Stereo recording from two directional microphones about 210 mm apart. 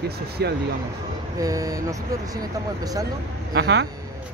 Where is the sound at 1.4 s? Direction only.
15° right (ahead or behind).